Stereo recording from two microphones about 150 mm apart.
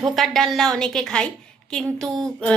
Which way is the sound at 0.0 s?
Centre (ahead or behind).